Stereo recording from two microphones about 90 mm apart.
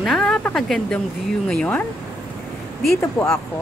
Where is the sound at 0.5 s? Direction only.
5° left (ahead or behind).